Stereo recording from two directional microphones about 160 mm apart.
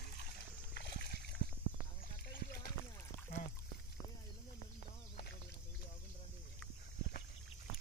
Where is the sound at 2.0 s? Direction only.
65° left (ahead or behind).